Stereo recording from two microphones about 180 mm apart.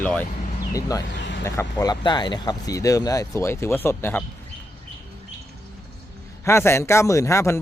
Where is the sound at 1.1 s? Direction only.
75° left (ahead or behind).